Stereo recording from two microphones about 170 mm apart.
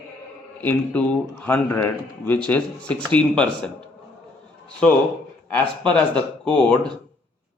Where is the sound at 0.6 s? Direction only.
10° left (ahead or behind).